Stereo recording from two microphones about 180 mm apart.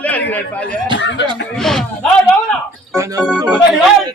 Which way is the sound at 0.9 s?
90° left.